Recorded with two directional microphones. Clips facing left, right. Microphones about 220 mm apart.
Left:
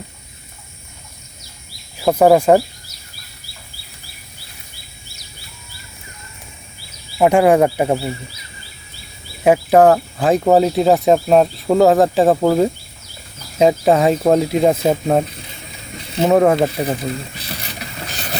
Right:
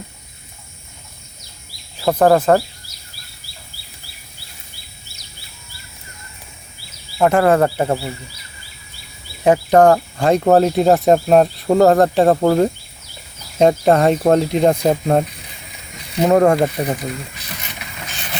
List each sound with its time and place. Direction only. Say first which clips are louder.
2.0 s speech: left 2 dB; 10° left (ahead or behind)
7.2 s speech: left 2 dB; 15° left (ahead or behind)
9.4 s speech: left 1 dB; 5° left (ahead or behind)
16.0 s mechanisms: even; 30° left (ahead or behind)
16.2 s speech: even; 5° left (ahead or behind)
16.8 s a sound: left 1 dB; 30° left (ahead or behind)